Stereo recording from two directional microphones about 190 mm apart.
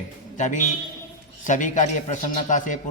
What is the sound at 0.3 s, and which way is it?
A man's voice, 40° left (ahead or behind).